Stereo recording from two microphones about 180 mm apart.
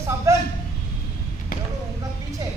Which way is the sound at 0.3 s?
15° right (ahead or behind).